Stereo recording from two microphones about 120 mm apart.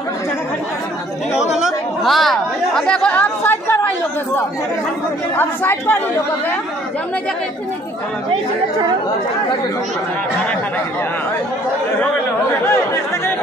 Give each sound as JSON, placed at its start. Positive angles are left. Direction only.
{"t": 1.3, "sound": "speech", "side_deg": -5}
{"t": 5.3, "sound": "speech", "side_deg": 20}